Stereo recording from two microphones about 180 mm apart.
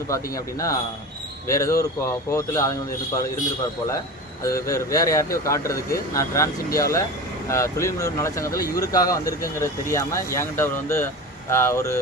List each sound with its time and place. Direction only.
0.1 s speech: 20° left (ahead or behind)
4.4 s speech: 15° left (ahead or behind)